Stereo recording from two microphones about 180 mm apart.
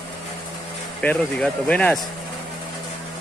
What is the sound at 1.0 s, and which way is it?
Speech, 5° left (ahead or behind).